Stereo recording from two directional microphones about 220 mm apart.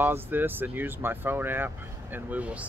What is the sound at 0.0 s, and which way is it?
Speech, 10° right (ahead or behind).